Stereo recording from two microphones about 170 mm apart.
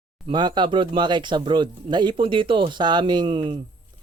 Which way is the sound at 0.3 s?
25° right (ahead or behind).